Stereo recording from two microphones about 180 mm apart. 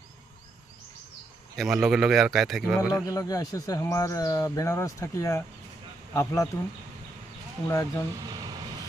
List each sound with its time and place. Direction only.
1.5 s a man's voice: centre (ahead or behind)
2.9 s speech: 20° left (ahead or behind)
7.7 s speech: 15° left (ahead or behind)